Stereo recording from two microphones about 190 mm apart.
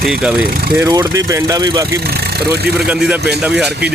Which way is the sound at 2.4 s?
60° right (ahead or behind).